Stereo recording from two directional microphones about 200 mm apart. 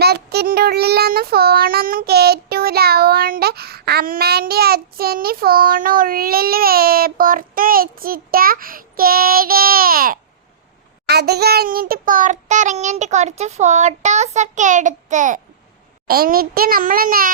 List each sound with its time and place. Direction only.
0.0 s child singing: 55° right (ahead or behind)